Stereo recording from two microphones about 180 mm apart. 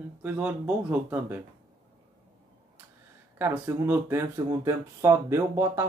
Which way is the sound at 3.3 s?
15° right (ahead or behind).